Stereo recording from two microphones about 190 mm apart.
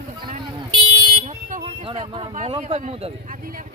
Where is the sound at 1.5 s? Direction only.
35° right (ahead or behind).